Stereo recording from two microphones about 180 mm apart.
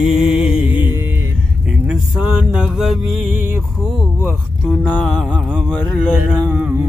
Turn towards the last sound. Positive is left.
turn(degrees=-5)  # may be behind; listen again after turning